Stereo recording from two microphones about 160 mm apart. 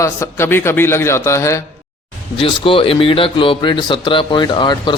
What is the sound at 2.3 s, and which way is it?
Speech, 35° left (ahead or behind).